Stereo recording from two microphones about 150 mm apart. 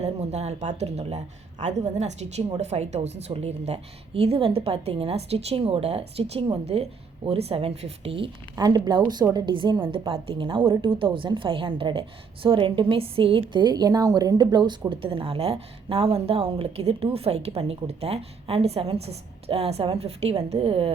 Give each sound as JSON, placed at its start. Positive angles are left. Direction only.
{"t": 0.0, "sound": "a woman's voice", "side_deg": -45}